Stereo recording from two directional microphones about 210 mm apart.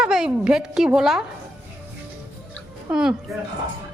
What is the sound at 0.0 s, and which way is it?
A woman's voice, 5° right (ahead or behind).